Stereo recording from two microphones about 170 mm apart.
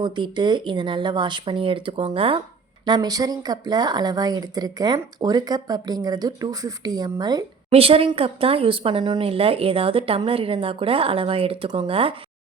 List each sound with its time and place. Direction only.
0.0 s speech: 25° right (ahead or behind)
7.7 s speech: 35° right (ahead or behind)